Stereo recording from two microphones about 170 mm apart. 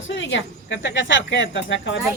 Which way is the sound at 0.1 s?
90° left.